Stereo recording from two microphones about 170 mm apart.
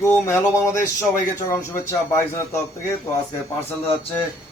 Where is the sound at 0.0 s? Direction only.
15° left (ahead or behind).